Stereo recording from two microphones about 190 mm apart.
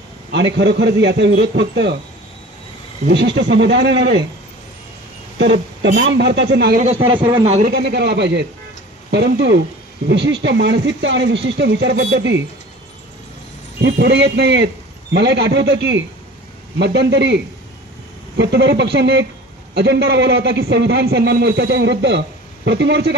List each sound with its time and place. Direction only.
0.6 s a man's voice: 65° right (ahead or behind)
3.1 s a man's voice: 65° right (ahead or behind)
5.4 s a man's voice: 65° right (ahead or behind)
6.8 s a man's voice: 35° right (ahead or behind)
7.1 s speech: 25° right (ahead or behind)
7.6 s a man's voice: 60° right (ahead or behind)
13.7 s a man's voice: 60° right (ahead or behind)